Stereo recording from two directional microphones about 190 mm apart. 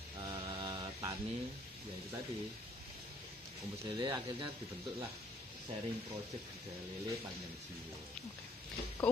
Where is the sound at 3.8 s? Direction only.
20° right (ahead or behind).